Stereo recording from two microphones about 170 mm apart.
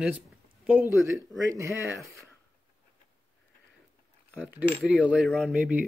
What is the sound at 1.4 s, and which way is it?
Speech, 20° right (ahead or behind).